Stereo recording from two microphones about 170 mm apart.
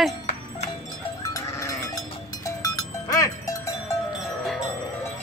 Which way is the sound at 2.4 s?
20° left (ahead or behind).